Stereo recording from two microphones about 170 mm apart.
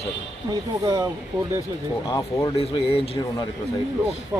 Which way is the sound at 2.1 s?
20° left (ahead or behind).